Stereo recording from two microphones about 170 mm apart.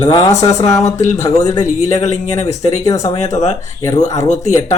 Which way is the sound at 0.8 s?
40° left (ahead or behind).